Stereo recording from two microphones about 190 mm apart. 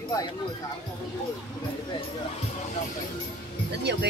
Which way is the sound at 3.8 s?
65° right (ahead or behind).